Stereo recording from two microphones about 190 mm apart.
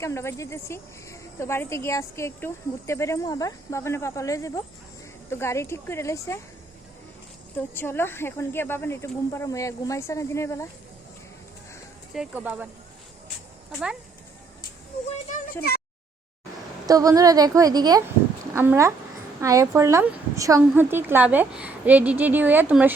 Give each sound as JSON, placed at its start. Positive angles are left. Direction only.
{"t": 0.0, "sound": "speech", "side_deg": 15}
{"t": 7.5, "sound": "speech", "side_deg": 10}
{"t": 12.1, "sound": "a woman's voice", "side_deg": -5}
{"t": 15.1, "sound": "a sound", "side_deg": 40}
{"t": 16.8, "sound": "a woman's voice", "side_deg": -20}